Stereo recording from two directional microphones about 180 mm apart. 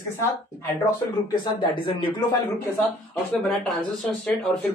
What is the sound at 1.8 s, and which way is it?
Speech, 30° left (ahead or behind).